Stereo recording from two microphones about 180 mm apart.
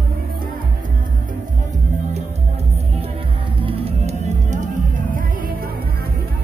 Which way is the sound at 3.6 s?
30° right (ahead or behind).